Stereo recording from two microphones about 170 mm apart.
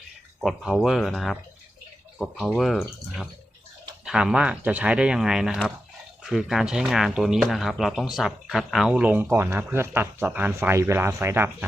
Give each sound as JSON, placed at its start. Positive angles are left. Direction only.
{"t": 0.4, "sound": "speech", "side_deg": 0}